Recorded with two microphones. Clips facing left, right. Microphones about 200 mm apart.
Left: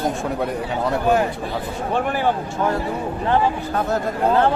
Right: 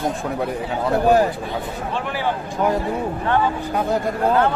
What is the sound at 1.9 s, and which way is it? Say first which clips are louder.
Speech: left 6 dB; 50° left (ahead or behind).